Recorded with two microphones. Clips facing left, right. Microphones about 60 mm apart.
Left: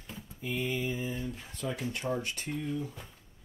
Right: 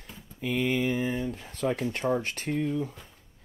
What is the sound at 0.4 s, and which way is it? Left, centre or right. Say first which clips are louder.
Speech: right 6 dB; right.